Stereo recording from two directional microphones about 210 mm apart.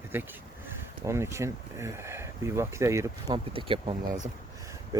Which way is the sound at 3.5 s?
25° right (ahead or behind).